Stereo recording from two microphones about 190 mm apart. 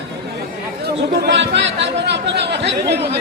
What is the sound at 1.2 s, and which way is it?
Speech, 70° right (ahead or behind).